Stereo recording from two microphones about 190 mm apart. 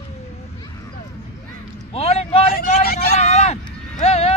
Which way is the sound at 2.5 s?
55° left (ahead or behind).